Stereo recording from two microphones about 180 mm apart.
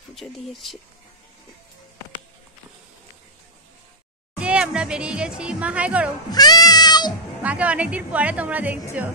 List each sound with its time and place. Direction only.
0.1 s speech: centre (ahead or behind)
4.4 s speech: 5° right (ahead or behind)
6.3 s cat: 20° left (ahead or behind)
7.4 s a woman's voice: 5° right (ahead or behind)